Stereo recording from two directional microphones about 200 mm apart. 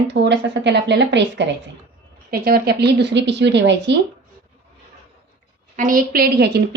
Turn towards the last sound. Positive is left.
turn(degrees=-50)  # may be behind; listen again after turning